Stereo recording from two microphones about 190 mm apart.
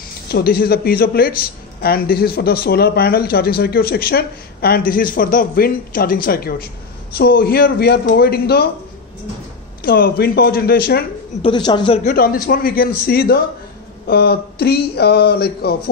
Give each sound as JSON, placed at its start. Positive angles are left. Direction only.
{"t": 0.3, "sound": "speech", "side_deg": 55}
{"t": 9.8, "sound": "speech", "side_deg": 50}
{"t": 11.4, "sound": "a woman's voice", "side_deg": 25}
{"t": 12.0, "sound": "speech", "side_deg": 50}